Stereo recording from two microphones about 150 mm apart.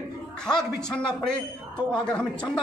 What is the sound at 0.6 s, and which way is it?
Speech, 5° left (ahead or behind).